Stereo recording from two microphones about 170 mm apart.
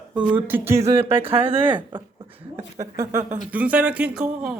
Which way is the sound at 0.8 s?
35° right (ahead or behind).